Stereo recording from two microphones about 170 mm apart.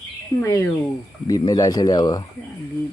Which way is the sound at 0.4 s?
15° left (ahead or behind).